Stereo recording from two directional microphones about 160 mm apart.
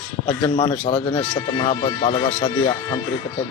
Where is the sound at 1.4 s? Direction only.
30° left (ahead or behind).